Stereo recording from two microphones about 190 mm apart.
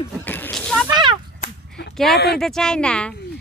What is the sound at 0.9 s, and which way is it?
Speech, 25° right (ahead or behind).